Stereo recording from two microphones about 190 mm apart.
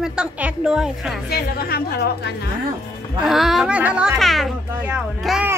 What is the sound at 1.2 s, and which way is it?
Speech, 55° left (ahead or behind).